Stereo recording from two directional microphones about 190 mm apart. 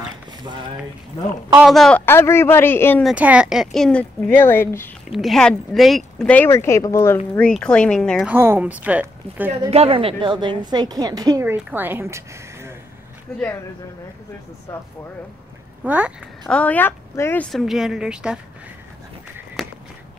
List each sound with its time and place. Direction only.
1.6 s a man's voice: centre (ahead or behind)
3.0 s speech: 5° right (ahead or behind); by 4.9 s 10° left (ahead or behind)
5.1 s speech: centre (ahead or behind)
8.3 s speech: 10° right (ahead or behind)
9.7 s a woman's voice: 30° right (ahead or behind); by 12.7 s 15° right (ahead or behind)
15.8 s speech: 5° right (ahead or behind)
16.4 s speech: 5° left (ahead or behind)
19.3 s a sound: 5° right (ahead or behind)